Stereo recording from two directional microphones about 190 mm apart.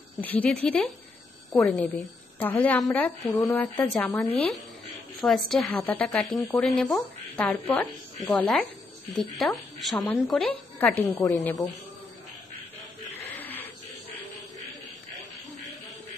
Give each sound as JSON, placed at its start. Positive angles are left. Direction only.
{"t": 0.2, "sound": "a woman's voice", "side_deg": 10}
{"t": 3.3, "sound": "speech", "side_deg": 20}
{"t": 3.7, "sound": "a woman's voice", "side_deg": 10}
{"t": 13.4, "sound": "a sound", "side_deg": 10}